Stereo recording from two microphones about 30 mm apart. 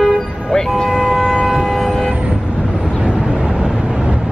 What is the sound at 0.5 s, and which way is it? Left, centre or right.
Vehicle, left.